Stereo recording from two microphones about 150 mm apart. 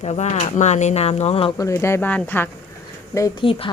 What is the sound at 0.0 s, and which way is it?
Speech, 45° left (ahead or behind).